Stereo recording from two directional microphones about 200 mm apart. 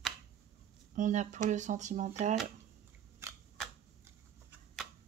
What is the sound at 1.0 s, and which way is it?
Speech, 35° right (ahead or behind).